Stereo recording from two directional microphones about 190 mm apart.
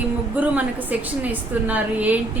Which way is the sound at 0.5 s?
10° right (ahead or behind).